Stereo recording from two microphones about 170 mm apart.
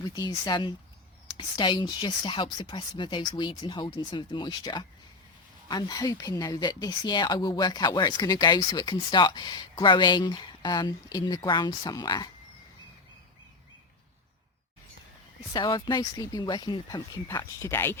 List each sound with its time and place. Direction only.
0.0 s speech: 20° left (ahead or behind)
15.5 s speech: 25° left (ahead or behind)